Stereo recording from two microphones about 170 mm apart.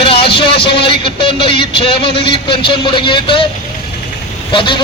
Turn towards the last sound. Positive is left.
turn(degrees=30)  # may be behind; listen again after turning